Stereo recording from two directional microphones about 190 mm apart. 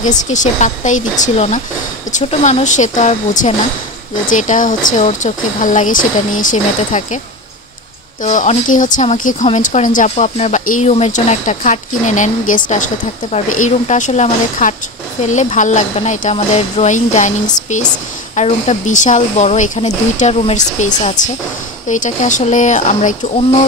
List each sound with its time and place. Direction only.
0.0 s speech: 40° left (ahead or behind)
8.2 s speech: 40° left (ahead or behind)